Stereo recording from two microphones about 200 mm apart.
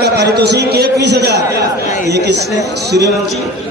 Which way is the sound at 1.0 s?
55° right (ahead or behind).